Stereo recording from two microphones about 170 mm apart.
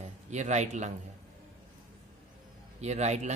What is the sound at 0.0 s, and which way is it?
Speech, 45° right (ahead or behind).